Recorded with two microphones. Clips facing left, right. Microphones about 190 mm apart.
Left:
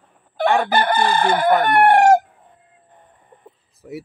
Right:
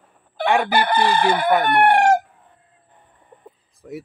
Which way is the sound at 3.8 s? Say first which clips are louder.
Left 1 dB; 5° left (ahead or behind).